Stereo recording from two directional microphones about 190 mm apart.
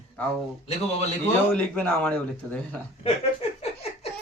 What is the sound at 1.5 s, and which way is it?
Speech, 5° left (ahead or behind).